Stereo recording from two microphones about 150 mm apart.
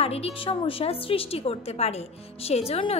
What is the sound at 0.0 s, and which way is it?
A woman's voice, 40° left (ahead or behind).